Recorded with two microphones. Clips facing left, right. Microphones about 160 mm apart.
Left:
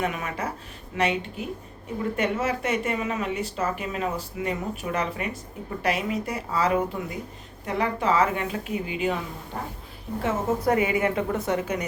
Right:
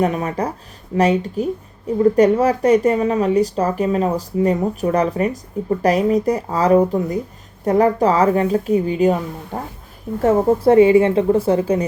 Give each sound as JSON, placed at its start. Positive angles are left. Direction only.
{"t": 0.0, "sound": "speech", "side_deg": -35}
{"t": 9.5, "sound": "speech", "side_deg": -90}
{"t": 10.2, "sound": "speech", "side_deg": -40}